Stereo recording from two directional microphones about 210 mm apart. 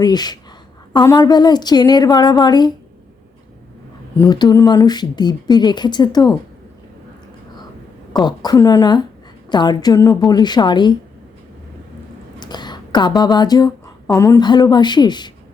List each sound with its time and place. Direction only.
0.0 s speech: 20° left (ahead or behind)
4.2 s speech: 20° left (ahead or behind)
8.2 s speech: 20° left (ahead or behind)
12.4 s speech: 20° left (ahead or behind)